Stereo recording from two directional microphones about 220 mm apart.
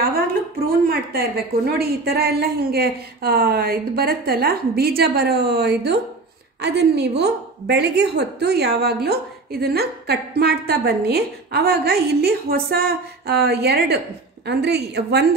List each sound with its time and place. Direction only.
0.7 s a woman's voice: 45° right (ahead or behind)